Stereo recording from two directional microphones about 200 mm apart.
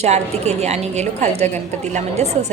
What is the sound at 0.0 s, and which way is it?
A woman's voice, 35° right (ahead or behind).